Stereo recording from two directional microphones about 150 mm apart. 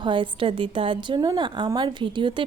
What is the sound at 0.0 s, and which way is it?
A woman's voice, 35° right (ahead or behind).